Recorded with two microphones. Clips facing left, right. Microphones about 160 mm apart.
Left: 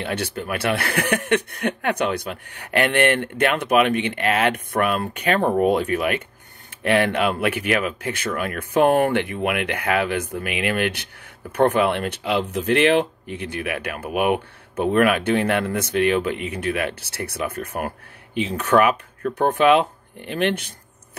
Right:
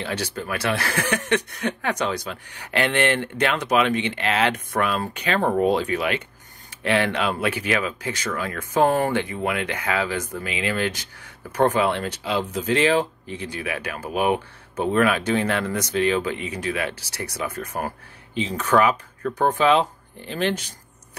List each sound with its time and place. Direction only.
0.0 s speech: 55° left (ahead or behind)